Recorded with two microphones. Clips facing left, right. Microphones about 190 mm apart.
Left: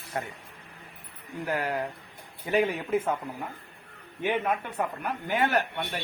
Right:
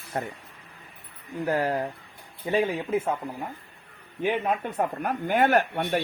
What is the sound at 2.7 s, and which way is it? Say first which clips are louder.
Speech: right 1 dB; 10° right (ahead or behind).